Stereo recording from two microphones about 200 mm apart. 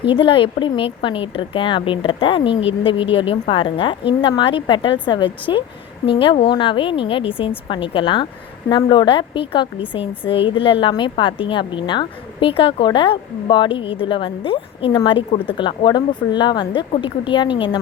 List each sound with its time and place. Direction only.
0.0 s a woman's voice: 25° left (ahead or behind)